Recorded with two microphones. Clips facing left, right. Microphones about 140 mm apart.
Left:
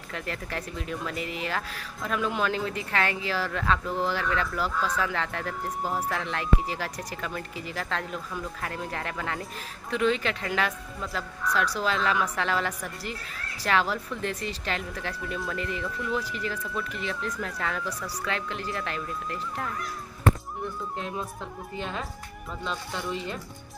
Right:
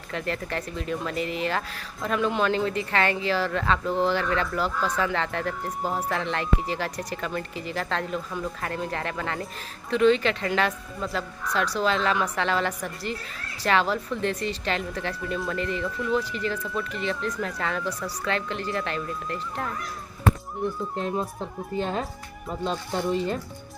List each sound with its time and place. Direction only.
0.1 s speech: 5° left (ahead or behind)
21.0 s speech: 35° right (ahead or behind)